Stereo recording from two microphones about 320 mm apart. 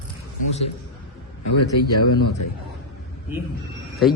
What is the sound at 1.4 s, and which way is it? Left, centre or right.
Speech, left.